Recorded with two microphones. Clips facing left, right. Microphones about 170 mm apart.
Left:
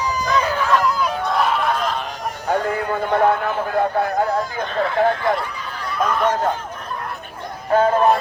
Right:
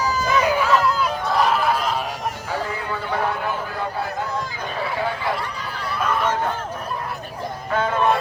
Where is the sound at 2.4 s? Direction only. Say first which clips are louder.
Left 11 dB; 55° left (ahead or behind).